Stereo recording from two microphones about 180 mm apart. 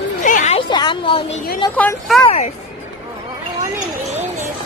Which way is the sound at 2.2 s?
35° left (ahead or behind).